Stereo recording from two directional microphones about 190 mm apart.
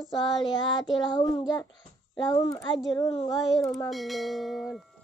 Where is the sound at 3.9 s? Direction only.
Centre (ahead or behind).